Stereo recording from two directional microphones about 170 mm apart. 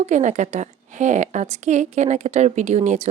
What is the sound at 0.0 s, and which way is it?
A woman's voice, 45° right (ahead or behind).